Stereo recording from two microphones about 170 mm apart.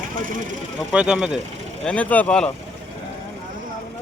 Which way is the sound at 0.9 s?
5° right (ahead or behind).